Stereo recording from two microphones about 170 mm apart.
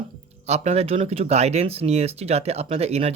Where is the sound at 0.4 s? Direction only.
40° right (ahead or behind).